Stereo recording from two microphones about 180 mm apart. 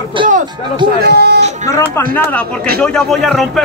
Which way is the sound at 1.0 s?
65° right (ahead or behind).